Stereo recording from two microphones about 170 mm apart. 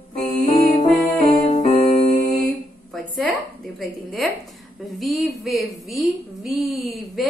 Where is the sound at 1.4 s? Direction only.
45° left (ahead or behind).